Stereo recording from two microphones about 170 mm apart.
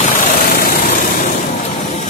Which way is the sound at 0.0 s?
50° left (ahead or behind).